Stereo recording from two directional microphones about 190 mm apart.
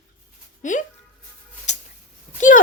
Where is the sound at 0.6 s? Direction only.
45° left (ahead or behind).